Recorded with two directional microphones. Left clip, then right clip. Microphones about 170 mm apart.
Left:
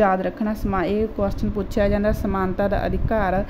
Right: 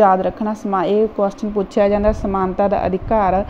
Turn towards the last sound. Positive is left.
turn(degrees=-5)  # may be behind; listen again after turning